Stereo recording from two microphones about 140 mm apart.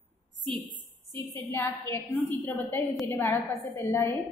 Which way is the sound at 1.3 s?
15° left (ahead or behind).